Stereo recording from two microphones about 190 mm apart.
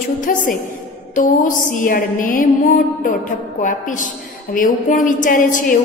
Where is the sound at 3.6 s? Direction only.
45° left (ahead or behind).